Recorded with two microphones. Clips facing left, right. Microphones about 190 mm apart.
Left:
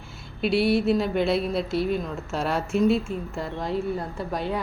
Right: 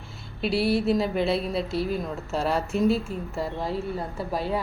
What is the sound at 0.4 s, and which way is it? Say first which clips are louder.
Speech: left 2 dB; centre (ahead or behind).